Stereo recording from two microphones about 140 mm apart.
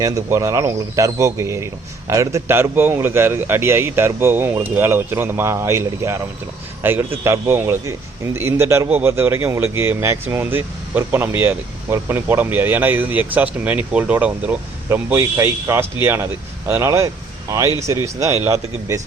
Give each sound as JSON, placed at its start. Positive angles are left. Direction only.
{"t": 0.0, "sound": "a man's voice", "side_deg": -20}